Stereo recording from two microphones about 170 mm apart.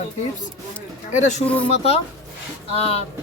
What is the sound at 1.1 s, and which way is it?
Speech, 45° left (ahead or behind).